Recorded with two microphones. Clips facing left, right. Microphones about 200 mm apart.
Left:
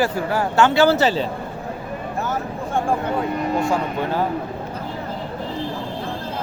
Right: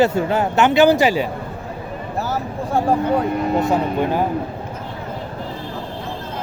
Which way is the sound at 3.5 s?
20° right (ahead or behind).